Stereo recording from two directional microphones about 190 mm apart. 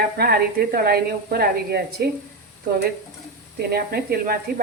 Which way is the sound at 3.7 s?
55° right (ahead or behind).